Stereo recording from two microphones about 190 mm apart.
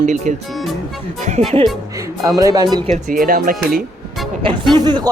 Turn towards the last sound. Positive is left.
turn(degrees=-25)  # may be behind; listen again after turning